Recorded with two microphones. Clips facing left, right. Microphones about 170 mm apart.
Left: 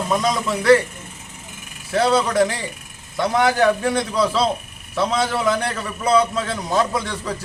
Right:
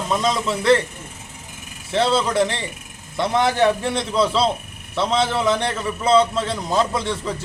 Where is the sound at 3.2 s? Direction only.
Centre (ahead or behind).